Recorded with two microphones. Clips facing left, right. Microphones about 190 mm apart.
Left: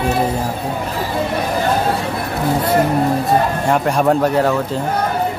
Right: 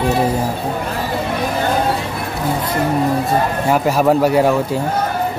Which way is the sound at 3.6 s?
5° right (ahead or behind).